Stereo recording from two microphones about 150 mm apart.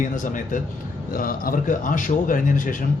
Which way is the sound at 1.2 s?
70° left (ahead or behind).